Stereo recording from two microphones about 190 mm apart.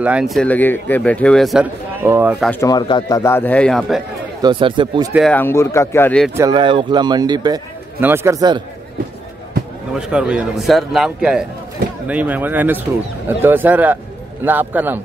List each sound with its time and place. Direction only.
0.0 s speech: 5° right (ahead or behind)
2.0 s speech: 10° right (ahead or behind)
2.6 s speech: 20° left (ahead or behind); by 4.0 s 5° left (ahead or behind)
4.4 s speech: 25° right (ahead or behind)
5.3 s speech: 10° left (ahead or behind)
6.3 s speech: 20° right (ahead or behind)
9.9 s speech: 5° right (ahead or behind)